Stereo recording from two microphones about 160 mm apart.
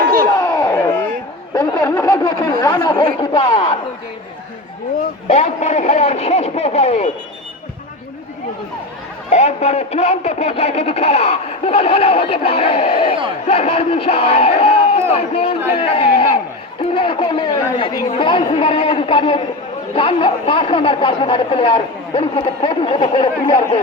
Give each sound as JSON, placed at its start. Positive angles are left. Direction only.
{"t": 0.3, "sound": "a sound", "side_deg": 20}
{"t": 5.3, "sound": "a man's voice", "side_deg": 45}
{"t": 9.3, "sound": "speech", "side_deg": 45}